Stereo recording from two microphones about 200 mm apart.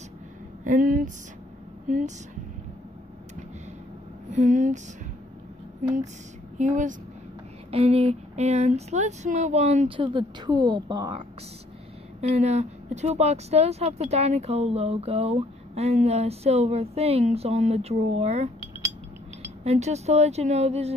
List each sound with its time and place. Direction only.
0.7 s speech: 45° right (ahead or behind)
4.3 s speech: 35° right (ahead or behind)
6.6 s speech: 40° right (ahead or behind); by 11.2 s 20° right (ahead or behind)
12.2 s speech: 35° right (ahead or behind)
19.6 s speech: 35° right (ahead or behind)